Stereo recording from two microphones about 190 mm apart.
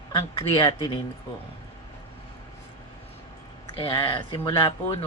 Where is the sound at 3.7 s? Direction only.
25° left (ahead or behind).